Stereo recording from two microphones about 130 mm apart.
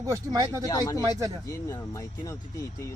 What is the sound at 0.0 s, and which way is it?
Speech, 25° right (ahead or behind).